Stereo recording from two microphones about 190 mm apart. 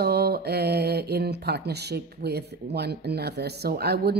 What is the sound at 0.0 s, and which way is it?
Speech, 55° right (ahead or behind).